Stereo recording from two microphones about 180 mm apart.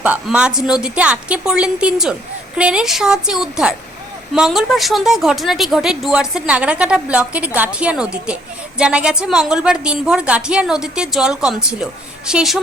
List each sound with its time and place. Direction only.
0.0 s speech: 5° right (ahead or behind)